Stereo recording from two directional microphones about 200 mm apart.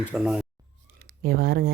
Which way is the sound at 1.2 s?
50° right (ahead or behind).